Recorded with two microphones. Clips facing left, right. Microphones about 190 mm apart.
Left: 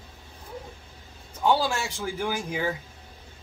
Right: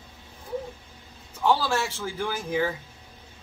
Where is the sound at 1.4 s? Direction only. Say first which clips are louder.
Even; 15° left (ahead or behind).